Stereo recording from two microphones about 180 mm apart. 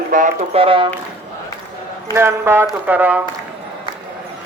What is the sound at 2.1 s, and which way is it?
Speech, 15° right (ahead or behind).